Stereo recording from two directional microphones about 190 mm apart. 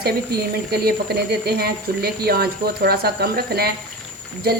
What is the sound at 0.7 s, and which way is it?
Speech, 55° right (ahead or behind).